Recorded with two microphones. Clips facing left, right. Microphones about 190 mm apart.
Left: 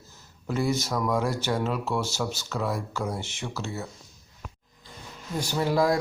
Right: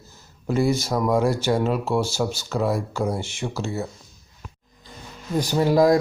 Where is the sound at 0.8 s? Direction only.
30° right (ahead or behind).